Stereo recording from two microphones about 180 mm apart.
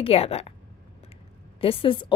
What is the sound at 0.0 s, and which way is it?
Speech, 35° left (ahead or behind).